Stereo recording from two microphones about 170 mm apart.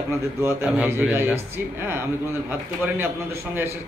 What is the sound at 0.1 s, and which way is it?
A man's voice, 15° right (ahead or behind).